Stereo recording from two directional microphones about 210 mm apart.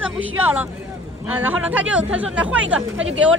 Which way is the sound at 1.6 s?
5° right (ahead or behind).